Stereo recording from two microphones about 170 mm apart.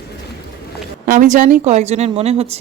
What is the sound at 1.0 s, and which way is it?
A woman's voice, 55° right (ahead or behind).